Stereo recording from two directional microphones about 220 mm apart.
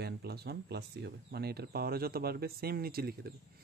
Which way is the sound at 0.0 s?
45° right (ahead or behind).